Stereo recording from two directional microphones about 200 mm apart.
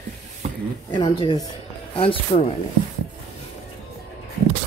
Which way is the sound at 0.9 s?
25° left (ahead or behind).